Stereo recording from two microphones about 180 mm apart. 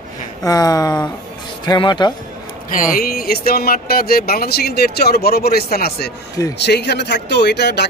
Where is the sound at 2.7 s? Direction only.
50° left (ahead or behind).